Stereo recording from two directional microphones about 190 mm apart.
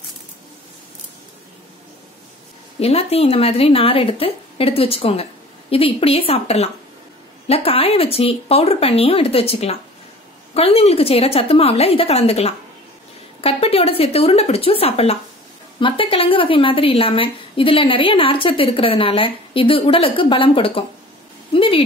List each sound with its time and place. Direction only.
2.8 s a woman's voice: 30° left (ahead or behind)